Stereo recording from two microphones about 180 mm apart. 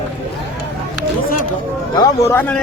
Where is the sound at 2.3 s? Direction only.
10° left (ahead or behind).